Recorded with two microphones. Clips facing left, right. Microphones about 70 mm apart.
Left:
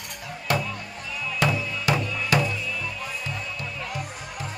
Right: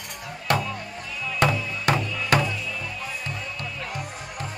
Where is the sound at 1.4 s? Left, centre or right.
Right.